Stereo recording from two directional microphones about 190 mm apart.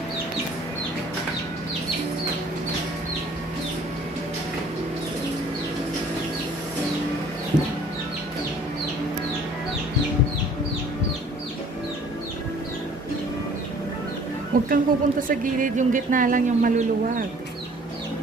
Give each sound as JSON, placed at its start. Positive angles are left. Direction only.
{"t": 7.5, "sound": "chicken", "side_deg": -45}
{"t": 14.7, "sound": "speech", "side_deg": -45}